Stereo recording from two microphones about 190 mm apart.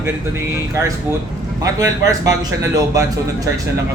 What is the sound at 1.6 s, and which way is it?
A man's voice, 15° right (ahead or behind).